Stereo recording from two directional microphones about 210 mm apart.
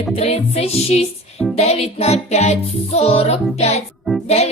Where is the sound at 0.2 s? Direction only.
30° left (ahead or behind).